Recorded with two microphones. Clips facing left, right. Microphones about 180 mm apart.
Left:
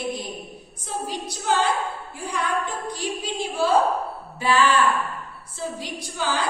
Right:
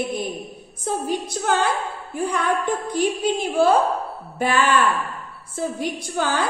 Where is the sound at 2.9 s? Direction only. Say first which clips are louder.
Right 10 dB; 55° right (ahead or behind).